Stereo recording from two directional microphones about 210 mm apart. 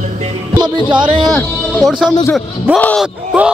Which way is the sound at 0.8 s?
20° right (ahead or behind).